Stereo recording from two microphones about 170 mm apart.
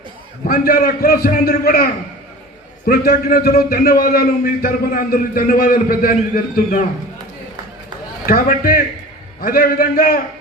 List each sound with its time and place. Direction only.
0.4 s a man's voice: 60° left (ahead or behind)
8.3 s a man's voice: 60° left (ahead or behind)